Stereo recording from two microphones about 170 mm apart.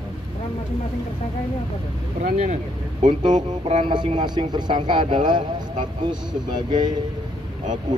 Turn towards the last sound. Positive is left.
turn(degrees=-25)  # may be behind; listen again after turning